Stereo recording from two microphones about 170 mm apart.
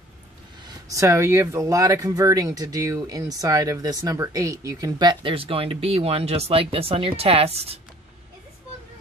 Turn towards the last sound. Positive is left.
turn(degrees=-35)  # may be behind; listen again after turning